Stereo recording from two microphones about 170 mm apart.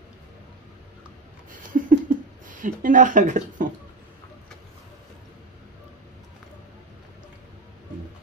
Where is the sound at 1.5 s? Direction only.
50° right (ahead or behind).